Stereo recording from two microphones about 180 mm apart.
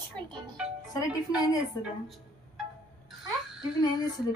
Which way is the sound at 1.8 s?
20° left (ahead or behind).